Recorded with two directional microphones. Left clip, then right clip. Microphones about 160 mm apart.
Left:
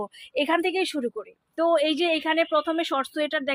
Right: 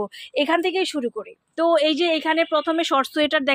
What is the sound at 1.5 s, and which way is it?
A woman's voice, 20° right (ahead or behind).